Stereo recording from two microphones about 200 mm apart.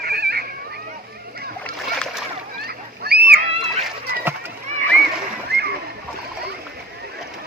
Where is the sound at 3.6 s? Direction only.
Centre (ahead or behind).